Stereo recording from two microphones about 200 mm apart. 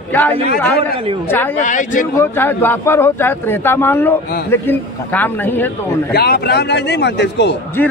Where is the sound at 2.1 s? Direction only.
10° left (ahead or behind).